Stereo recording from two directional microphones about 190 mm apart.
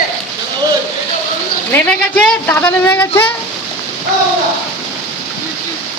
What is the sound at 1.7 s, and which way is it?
Speech, 10° left (ahead or behind).